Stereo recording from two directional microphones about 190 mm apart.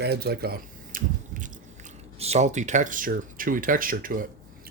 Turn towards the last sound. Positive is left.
turn(degrees=-45)  # may be behind; listen again after turning